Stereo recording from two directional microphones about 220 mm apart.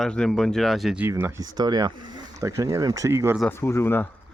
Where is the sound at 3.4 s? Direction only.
10° left (ahead or behind).